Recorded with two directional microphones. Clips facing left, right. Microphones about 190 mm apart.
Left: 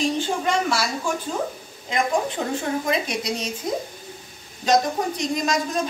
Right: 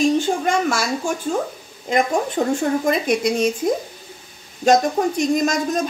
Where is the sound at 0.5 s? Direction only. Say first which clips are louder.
Right 3 dB; 50° right (ahead or behind).